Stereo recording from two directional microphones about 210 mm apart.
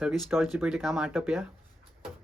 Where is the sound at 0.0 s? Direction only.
Centre (ahead or behind).